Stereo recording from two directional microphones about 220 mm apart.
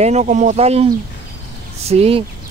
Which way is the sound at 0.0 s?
30° right (ahead or behind).